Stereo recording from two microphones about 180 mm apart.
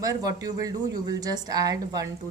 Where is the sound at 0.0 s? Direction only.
20° right (ahead or behind).